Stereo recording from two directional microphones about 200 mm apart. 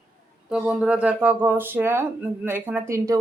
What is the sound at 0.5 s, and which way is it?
Speech, 5° right (ahead or behind).